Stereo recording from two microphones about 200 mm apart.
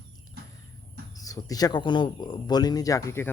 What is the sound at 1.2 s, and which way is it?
Speech, 15° left (ahead or behind).